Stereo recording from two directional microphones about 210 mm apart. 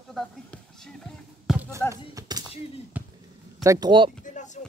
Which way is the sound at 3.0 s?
5° right (ahead or behind).